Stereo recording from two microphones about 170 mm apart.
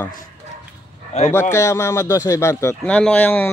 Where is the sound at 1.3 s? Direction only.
15° left (ahead or behind).